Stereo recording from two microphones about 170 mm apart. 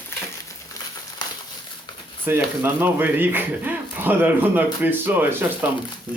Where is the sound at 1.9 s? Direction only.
25° left (ahead or behind).